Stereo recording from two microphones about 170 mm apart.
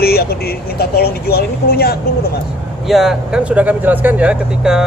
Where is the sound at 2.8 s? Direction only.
Centre (ahead or behind).